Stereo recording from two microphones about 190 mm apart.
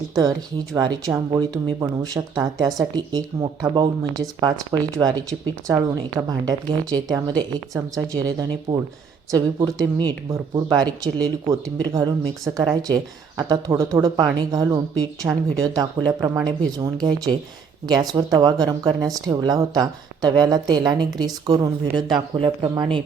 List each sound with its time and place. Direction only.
0.1 s speech: 20° right (ahead or behind)
13.5 s speech: 15° right (ahead or behind)